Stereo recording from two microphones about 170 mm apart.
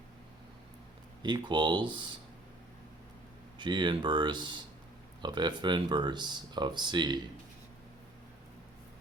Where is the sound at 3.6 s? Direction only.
25° right (ahead or behind).